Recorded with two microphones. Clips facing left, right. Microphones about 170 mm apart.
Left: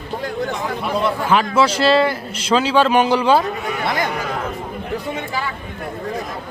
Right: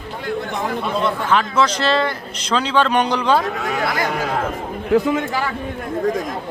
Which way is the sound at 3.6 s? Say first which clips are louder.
Right 2 dB; 90° right.